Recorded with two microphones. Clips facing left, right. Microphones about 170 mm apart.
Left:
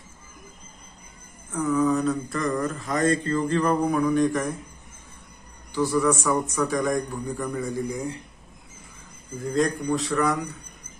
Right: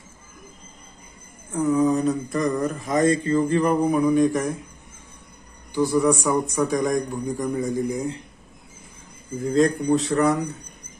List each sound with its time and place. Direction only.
1.7 s mantra: 20° right (ahead or behind)
5.8 s speech: 15° right (ahead or behind)
9.6 s speech: 25° right (ahead or behind)